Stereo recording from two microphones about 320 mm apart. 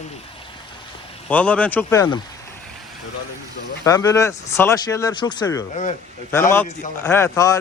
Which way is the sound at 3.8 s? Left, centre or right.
Centre.